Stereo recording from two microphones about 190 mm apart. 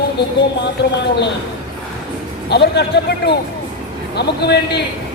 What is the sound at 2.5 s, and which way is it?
Speech, 60° left (ahead or behind).